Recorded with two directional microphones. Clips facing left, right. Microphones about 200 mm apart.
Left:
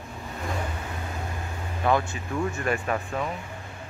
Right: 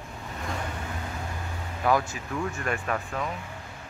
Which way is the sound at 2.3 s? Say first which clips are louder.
Left 3 dB; 5° left (ahead or behind).